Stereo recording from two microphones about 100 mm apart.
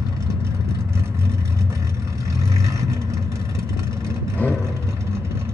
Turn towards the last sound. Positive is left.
turn(degrees=15)  # may be behind; listen again after turning